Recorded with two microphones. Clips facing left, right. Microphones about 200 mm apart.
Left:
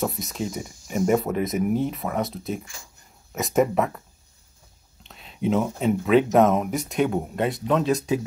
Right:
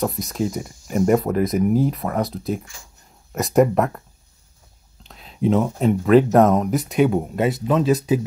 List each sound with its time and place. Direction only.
0.0 s speech: centre (ahead or behind)
5.0 s speech: centre (ahead or behind)